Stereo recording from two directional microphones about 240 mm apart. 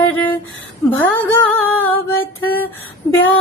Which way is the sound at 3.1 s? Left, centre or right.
Left.